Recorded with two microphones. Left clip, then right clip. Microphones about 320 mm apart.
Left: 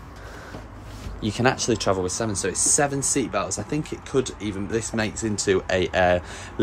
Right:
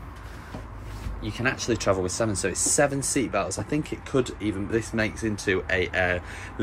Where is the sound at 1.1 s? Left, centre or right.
Centre.